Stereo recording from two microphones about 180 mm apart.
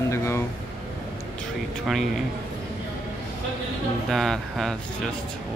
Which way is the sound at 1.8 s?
Centre (ahead or behind).